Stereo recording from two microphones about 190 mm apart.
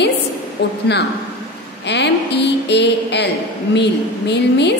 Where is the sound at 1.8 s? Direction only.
65° left (ahead or behind).